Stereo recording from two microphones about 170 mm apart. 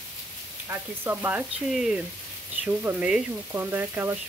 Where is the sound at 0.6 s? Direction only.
15° right (ahead or behind).